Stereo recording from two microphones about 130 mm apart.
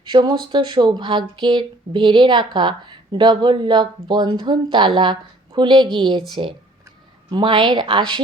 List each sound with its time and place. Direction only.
0.0 s speech: 35° right (ahead or behind)
7.3 s speech: 35° right (ahead or behind)